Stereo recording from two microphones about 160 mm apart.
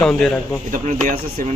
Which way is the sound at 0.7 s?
55° right (ahead or behind).